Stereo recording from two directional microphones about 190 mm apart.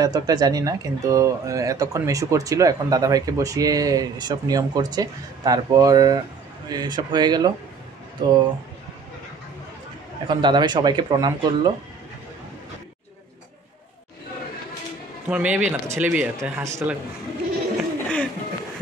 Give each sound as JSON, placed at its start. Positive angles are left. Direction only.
{"t": 0.0, "sound": "speech", "side_deg": -20}
{"t": 10.2, "sound": "speech", "side_deg": -25}
{"t": 15.2, "sound": "speech", "side_deg": -5}
{"t": 17.7, "sound": "a sound", "side_deg": 5}